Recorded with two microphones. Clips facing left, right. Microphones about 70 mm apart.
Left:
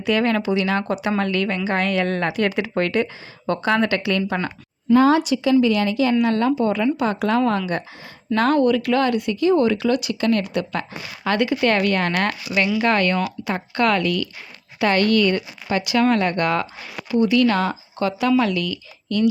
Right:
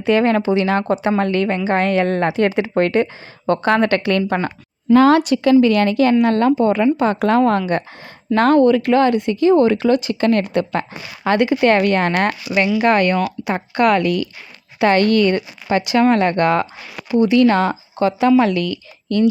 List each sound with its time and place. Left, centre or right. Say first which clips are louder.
0.0 s speech: right 5 dB; right
4.9 s speech: right 4 dB; right
5.2 s a woman's voice: right 4 dB; right